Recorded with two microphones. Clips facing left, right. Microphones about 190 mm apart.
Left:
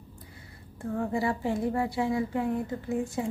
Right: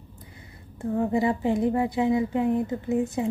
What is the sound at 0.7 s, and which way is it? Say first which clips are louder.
A woman's voice: right 5 dB; 20° right (ahead or behind).